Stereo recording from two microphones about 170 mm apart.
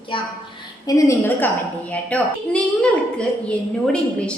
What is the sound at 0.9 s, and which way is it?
A woman's voice, 20° left (ahead or behind).